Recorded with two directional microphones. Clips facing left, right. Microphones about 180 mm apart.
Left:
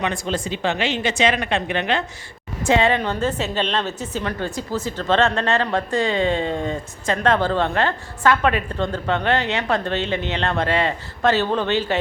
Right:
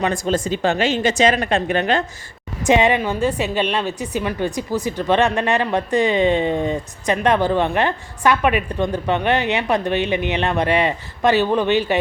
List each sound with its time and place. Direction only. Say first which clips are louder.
0.0 s speech: right 4 dB; 45° right (ahead or behind)
2.6 s a woman's voice: right 2 dB; 15° right (ahead or behind)